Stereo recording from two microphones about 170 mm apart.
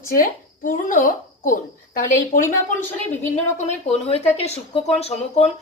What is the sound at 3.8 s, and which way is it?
Speech, 40° left (ahead or behind).